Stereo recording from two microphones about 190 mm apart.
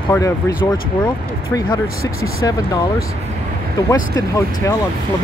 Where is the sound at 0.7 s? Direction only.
20° left (ahead or behind).